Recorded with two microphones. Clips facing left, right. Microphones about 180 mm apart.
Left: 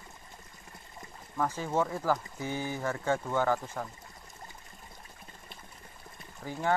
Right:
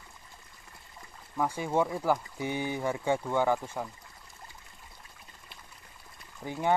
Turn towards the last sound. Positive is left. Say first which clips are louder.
# right 1 dB
turn(degrees=-15)  # may be behind; listen again after turning